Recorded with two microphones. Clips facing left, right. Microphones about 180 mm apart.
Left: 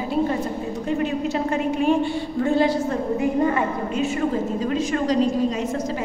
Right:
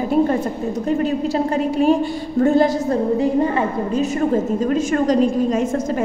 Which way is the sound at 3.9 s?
45° right (ahead or behind).